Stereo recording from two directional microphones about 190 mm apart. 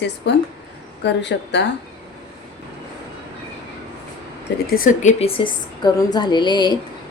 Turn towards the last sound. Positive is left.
turn(degrees=20)  # may be behind; listen again after turning